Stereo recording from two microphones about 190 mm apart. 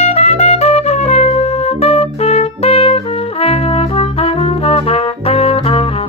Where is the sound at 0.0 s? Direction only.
35° left (ahead or behind).